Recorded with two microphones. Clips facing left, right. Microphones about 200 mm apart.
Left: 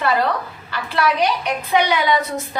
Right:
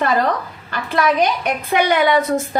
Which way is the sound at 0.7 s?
50° right (ahead or behind).